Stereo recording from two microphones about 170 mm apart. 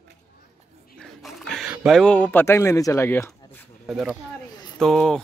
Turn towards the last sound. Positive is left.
turn(degrees=0)  # may be behind; listen again after turning